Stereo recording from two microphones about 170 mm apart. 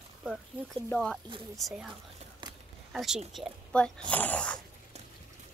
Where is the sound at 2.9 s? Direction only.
Centre (ahead or behind).